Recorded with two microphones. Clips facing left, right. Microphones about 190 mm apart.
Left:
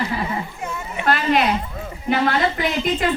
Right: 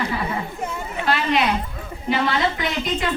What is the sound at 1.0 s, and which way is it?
Speech, 50° left (ahead or behind).